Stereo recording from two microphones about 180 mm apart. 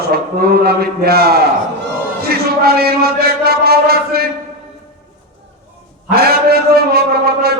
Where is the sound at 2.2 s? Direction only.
60° right (ahead or behind).